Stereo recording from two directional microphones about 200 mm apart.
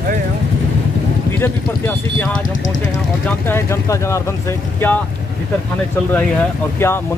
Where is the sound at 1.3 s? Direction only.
10° left (ahead or behind).